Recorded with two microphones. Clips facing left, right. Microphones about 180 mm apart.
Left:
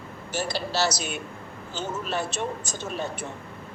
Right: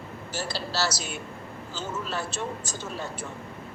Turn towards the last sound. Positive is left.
turn(degrees=20)  # may be behind; listen again after turning